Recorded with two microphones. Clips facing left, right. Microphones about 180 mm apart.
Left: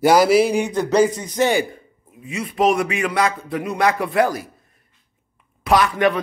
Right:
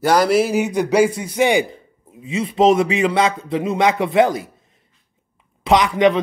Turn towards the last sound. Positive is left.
turn(degrees=-20)  # may be behind; listen again after turning